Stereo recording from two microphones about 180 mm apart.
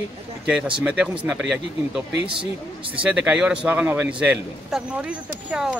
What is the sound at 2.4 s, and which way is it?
Speech, 30° right (ahead or behind).